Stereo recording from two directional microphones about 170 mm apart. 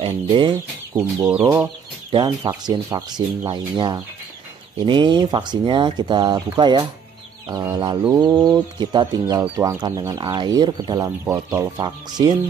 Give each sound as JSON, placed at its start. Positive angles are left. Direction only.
{"t": 0.0, "sound": "speech", "side_deg": -30}
{"t": 0.9, "sound": "speech", "side_deg": -10}
{"t": 2.0, "sound": "speech", "side_deg": -25}